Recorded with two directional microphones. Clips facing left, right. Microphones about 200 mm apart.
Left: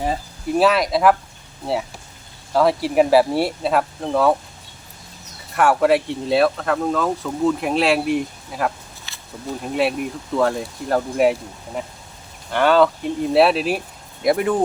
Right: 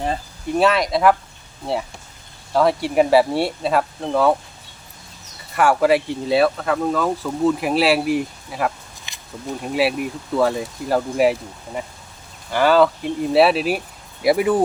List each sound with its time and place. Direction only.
0.0 s speech: 5° left (ahead or behind)
2.5 s speech: centre (ahead or behind)
5.5 s speech: centre (ahead or behind)
9.1 s a sound: 15° right (ahead or behind)
9.6 s speech: 5° right (ahead or behind)